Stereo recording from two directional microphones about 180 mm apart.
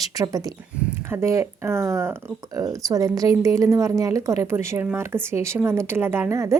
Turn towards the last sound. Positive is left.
turn(degrees=-15)  # may be behind; listen again after turning